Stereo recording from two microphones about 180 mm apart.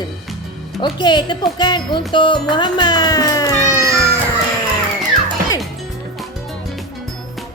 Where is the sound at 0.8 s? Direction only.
25° left (ahead or behind).